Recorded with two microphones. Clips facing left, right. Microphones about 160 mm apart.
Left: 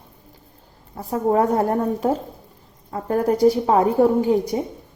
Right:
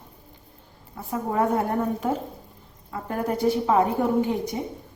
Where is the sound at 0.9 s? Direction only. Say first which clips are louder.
Left 6 dB; 35° left (ahead or behind).